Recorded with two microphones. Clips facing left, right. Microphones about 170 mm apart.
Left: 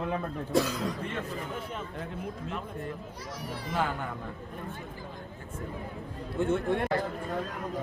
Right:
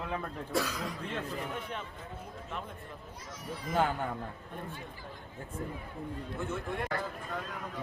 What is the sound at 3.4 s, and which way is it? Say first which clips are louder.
Speech: left 1 dB; 70° left (ahead or behind).